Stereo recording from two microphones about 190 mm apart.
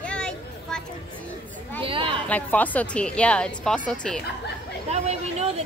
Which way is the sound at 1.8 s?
30° right (ahead or behind).